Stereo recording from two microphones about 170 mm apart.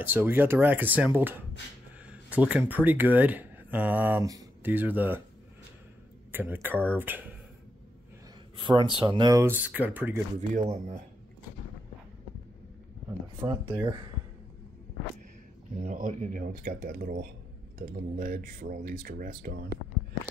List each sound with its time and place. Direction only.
0.0 s speech: 10° right (ahead or behind)
4.6 s speech: 10° right (ahead or behind)
6.3 s speech: 10° right (ahead or behind)
8.5 s speech: 25° right (ahead or behind); by 10.2 s 10° right (ahead or behind)
10.5 s speech: 45° right (ahead or behind)
13.4 s speech: 25° right (ahead or behind)
15.8 s speech: 50° right (ahead or behind)